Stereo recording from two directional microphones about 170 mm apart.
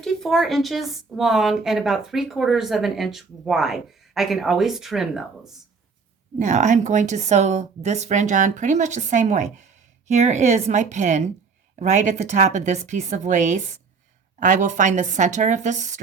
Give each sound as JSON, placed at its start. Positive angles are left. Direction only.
{"t": 0.0, "sound": "a woman's voice", "side_deg": 0}
{"t": 6.4, "sound": "a woman's voice", "side_deg": -45}